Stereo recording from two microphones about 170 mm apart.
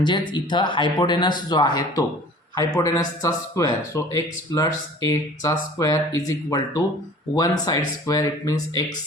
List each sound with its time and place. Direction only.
0.0 s speech: 25° left (ahead or behind)